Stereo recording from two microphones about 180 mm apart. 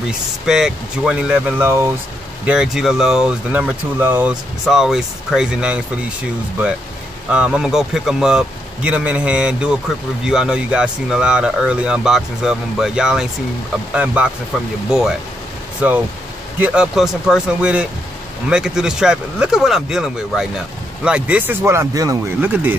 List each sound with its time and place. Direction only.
0.5 s speech: 5° right (ahead or behind)
7.2 s speech: 5° right (ahead or behind)